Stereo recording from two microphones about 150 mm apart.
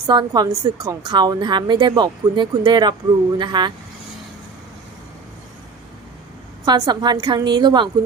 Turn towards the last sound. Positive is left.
turn(degrees=-30)  # may be behind; listen again after turning